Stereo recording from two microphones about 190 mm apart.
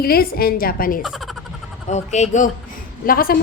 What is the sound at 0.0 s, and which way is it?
A woman's voice, 50° left (ahead or behind).